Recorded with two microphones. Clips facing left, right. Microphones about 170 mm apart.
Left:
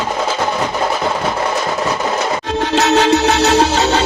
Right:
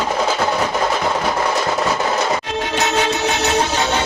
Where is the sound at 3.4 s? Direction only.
80° left.